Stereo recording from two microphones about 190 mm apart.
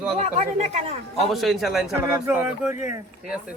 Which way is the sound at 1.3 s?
Centre (ahead or behind).